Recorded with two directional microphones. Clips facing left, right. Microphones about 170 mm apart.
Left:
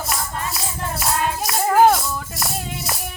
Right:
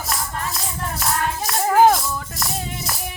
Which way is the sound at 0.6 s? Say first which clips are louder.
Left 1 dB; 10° left (ahead or behind).